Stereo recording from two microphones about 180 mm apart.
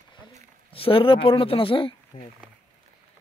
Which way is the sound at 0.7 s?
30° left (ahead or behind).